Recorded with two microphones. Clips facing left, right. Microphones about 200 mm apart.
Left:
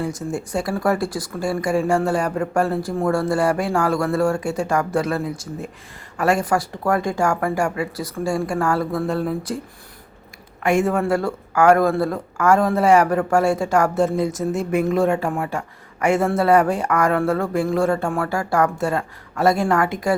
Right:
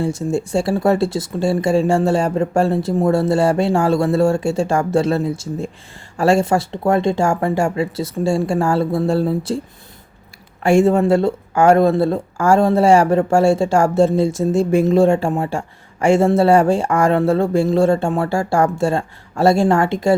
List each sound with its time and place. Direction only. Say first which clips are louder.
0.0 s speech: right 5 dB; 25° right (ahead or behind)
10.6 s speech: right 6 dB; 30° right (ahead or behind)